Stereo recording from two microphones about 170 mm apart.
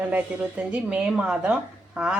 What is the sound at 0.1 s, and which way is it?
A woman's voice, 10° right (ahead or behind).